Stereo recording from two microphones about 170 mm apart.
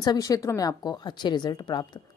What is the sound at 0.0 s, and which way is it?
Speech, 20° left (ahead or behind).